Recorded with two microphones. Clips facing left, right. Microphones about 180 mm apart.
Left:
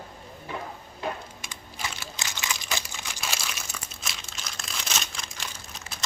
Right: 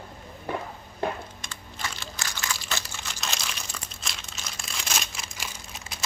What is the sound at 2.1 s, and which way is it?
Crumpling, 20° left (ahead or behind).